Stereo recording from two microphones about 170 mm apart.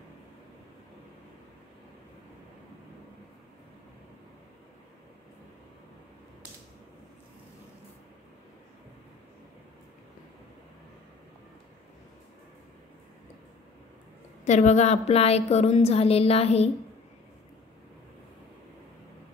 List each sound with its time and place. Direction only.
14.4 s a woman's voice: 45° left (ahead or behind)